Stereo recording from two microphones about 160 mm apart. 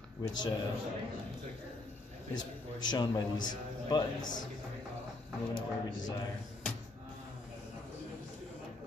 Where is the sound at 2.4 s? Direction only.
25° left (ahead or behind).